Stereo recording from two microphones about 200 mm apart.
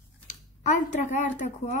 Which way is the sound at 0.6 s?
40° left (ahead or behind).